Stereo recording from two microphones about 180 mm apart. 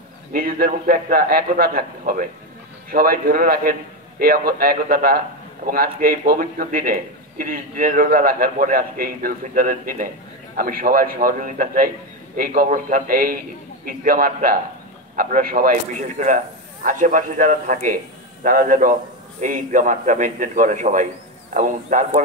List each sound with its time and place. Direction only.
0.3 s a man's voice: 55° right (ahead or behind)